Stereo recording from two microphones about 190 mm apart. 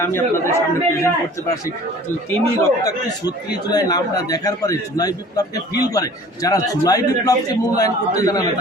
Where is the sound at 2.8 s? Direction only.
20° left (ahead or behind).